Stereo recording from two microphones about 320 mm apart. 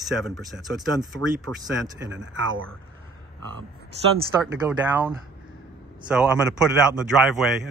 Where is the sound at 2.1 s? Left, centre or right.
Right.